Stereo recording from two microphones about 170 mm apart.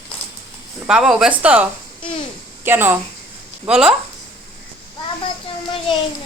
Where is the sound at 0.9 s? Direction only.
5° right (ahead or behind).